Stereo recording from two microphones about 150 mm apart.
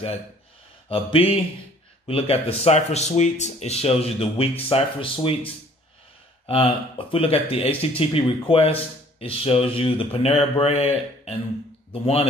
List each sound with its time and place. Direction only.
0.8 s speech: 40° left (ahead or behind)